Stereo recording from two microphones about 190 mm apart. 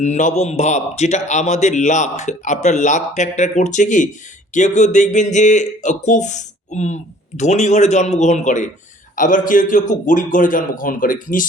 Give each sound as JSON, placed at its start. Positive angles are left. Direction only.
{"t": 0.0, "sound": "a man's voice", "side_deg": 40}